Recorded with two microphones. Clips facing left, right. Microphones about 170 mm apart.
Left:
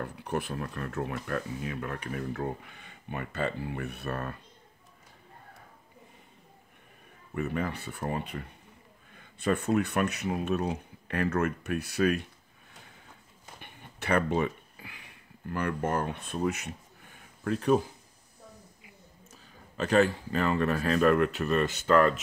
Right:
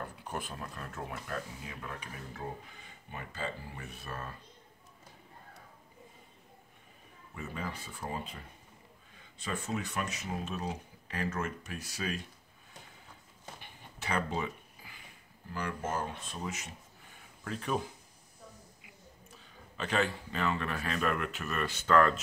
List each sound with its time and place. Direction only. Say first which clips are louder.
0.0 s speech: left 7 dB; 65° left (ahead or behind)
7.3 s speech: left 9 dB; 65° left (ahead or behind)
13.6 s a sound: left 3 dB; 60° left (ahead or behind)
17.5 s speech: left 9 dB; 40° left (ahead or behind)
19.3 s speech: left 6 dB; 45° left (ahead or behind); by 21.7 s 30° left (ahead or behind)